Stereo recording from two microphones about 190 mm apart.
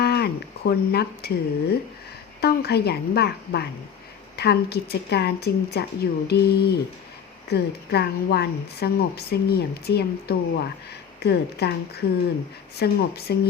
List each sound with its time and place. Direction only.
0.0 s speech: 60° left (ahead or behind)